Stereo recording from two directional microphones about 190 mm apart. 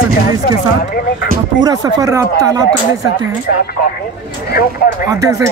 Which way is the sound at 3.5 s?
55° left (ahead or behind).